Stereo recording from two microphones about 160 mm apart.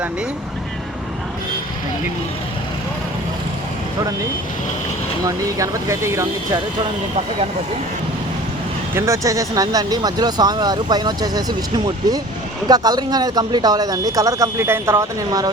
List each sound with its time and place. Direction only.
5.5 s speech: 20° right (ahead or behind)
9.0 s speech: 20° right (ahead or behind)
12.6 s speech: 25° right (ahead or behind)